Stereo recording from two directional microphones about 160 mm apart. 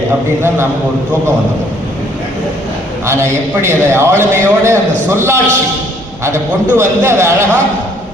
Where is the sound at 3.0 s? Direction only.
15° right (ahead or behind).